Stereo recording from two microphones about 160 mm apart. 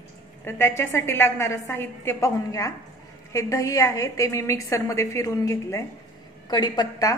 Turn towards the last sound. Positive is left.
turn(degrees=25)  # may be behind; listen again after turning